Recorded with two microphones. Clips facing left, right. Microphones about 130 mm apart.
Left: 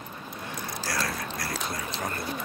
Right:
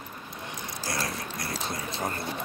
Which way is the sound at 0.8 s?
20° right (ahead or behind).